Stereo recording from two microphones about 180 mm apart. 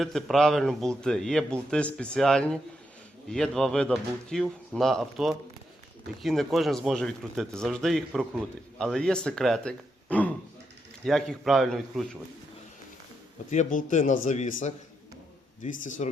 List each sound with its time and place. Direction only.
0.0 s a man's voice: centre (ahead or behind)
13.5 s speech: 45° left (ahead or behind)
15.8 s speech: 45° left (ahead or behind)